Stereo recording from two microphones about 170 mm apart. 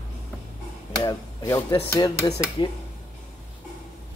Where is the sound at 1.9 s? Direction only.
20° left (ahead or behind).